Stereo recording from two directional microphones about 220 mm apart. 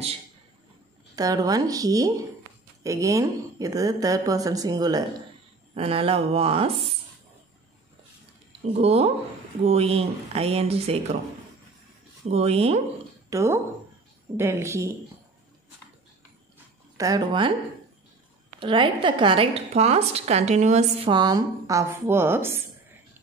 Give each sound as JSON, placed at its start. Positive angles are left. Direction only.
{"t": 1.1, "sound": "a woman's voice", "side_deg": -15}
{"t": 8.7, "sound": "a woman's voice", "side_deg": -30}
{"t": 12.3, "sound": "a woman's voice", "side_deg": -30}
{"t": 13.3, "sound": "speech", "side_deg": -15}
{"t": 16.9, "sound": "a woman's voice", "side_deg": -15}
{"t": 18.6, "sound": "a woman's voice", "side_deg": -20}